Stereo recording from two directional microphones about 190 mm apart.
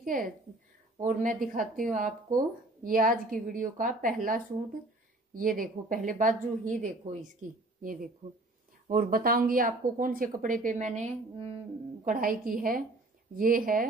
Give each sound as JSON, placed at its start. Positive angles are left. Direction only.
{"t": 0.0, "sound": "a woman's voice", "side_deg": -45}
{"t": 12.0, "sound": "a woman's voice", "side_deg": -45}